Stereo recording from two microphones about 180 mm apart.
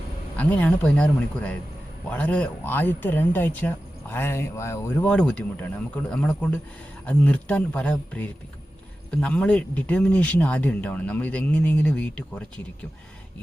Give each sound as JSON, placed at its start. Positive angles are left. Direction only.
{"t": 0.3, "sound": "speech", "side_deg": 10}